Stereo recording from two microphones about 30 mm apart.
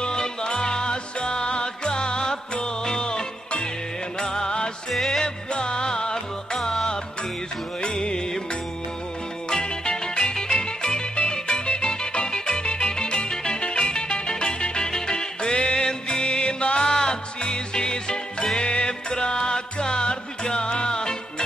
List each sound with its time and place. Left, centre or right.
0.0 s music: left
4.9 s music: centre
5.2 s music: left
7.8 s music: left
9.5 s music: left